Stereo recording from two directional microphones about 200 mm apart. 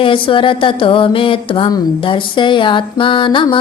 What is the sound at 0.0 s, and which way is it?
Mantra, 25° left (ahead or behind).